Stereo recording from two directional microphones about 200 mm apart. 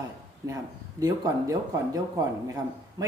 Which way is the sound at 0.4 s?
15° right (ahead or behind).